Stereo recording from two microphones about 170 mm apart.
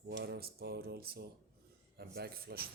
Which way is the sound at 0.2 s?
70° right (ahead or behind).